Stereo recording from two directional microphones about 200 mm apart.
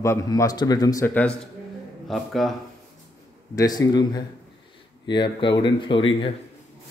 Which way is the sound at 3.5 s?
20° left (ahead or behind).